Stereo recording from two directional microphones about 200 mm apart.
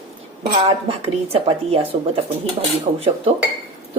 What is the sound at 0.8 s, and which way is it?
A woman's voice, 30° right (ahead or behind).